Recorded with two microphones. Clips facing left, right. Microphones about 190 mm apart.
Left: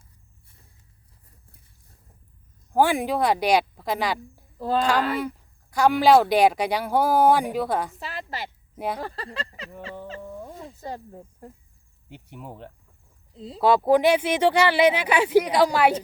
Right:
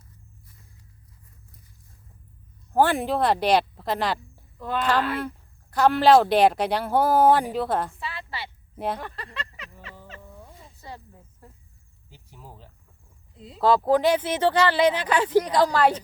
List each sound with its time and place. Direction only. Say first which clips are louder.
2.7 s speech: even; 10° left (ahead or behind)
4.5 s speech: left 4 dB; 35° left (ahead or behind)
5.7 s speech: even; 10° left (ahead or behind)
7.9 s a sound: left 2 dB; 40° left (ahead or behind)
8.7 s speech: even; 10° left (ahead or behind)
9.0 s speech: left 4 dB; 35° left (ahead or behind)
10.8 s speech: left 5 dB; 45° left (ahead or behind)
12.0 s speech: left 8 dB; 65° left (ahead or behind)
13.3 s speech: left 7 dB; 30° left (ahead or behind)
13.6 s speech: left 1 dB; 15° left (ahead or behind)